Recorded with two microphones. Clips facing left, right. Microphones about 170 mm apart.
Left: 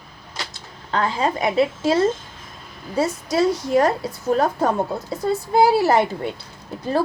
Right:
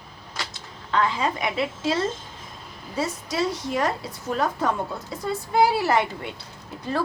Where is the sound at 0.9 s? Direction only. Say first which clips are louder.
Left 2 dB; 35° left (ahead or behind).